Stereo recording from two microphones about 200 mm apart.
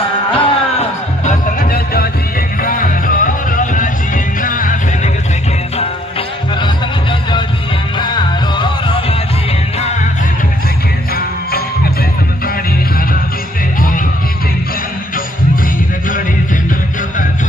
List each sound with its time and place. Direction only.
0.3 s music: 30° left (ahead or behind)
1.6 s music: 50° left (ahead or behind)
6.6 s music: 20° left (ahead or behind)